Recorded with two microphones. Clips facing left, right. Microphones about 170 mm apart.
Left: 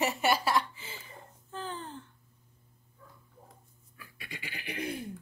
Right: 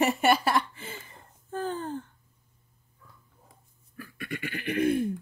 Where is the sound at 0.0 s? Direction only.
55° right (ahead or behind).